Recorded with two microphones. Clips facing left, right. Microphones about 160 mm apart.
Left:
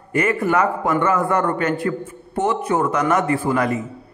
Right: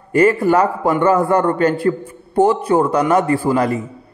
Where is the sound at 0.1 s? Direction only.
30° right (ahead or behind).